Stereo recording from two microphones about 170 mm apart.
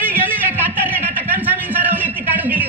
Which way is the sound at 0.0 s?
10° right (ahead or behind).